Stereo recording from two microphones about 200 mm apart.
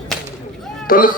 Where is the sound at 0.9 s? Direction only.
45° left (ahead or behind).